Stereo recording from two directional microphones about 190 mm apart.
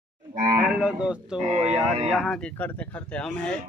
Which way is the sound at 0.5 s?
5° right (ahead or behind).